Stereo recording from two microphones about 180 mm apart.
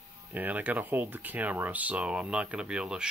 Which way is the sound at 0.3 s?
10° right (ahead or behind).